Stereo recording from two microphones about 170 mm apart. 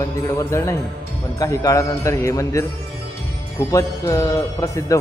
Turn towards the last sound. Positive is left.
turn(degrees=20)  # may be behind; listen again after turning